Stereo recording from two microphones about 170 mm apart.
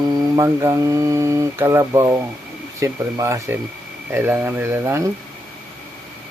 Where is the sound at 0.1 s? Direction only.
20° right (ahead or behind).